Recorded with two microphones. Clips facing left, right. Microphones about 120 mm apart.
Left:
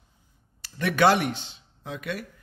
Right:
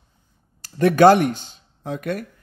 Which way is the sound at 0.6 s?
40° right (ahead or behind).